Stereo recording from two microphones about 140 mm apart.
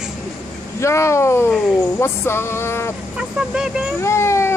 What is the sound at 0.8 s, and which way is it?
Speech, 20° left (ahead or behind).